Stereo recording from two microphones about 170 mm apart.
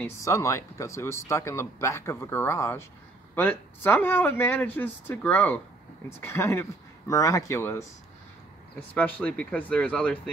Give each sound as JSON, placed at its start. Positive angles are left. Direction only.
{"t": 0.0, "sound": "speech", "side_deg": 15}
{"t": 8.9, "sound": "speech", "side_deg": 10}